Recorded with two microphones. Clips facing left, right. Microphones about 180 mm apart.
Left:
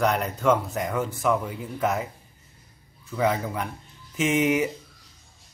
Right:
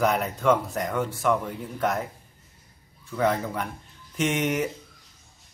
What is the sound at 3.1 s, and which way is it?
Speech, centre (ahead or behind).